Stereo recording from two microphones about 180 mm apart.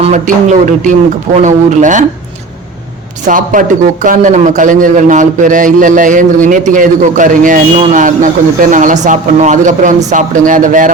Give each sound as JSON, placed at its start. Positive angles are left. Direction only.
{"t": 0.0, "sound": "a man's voice", "side_deg": -45}
{"t": 3.2, "sound": "a man's voice", "side_deg": -50}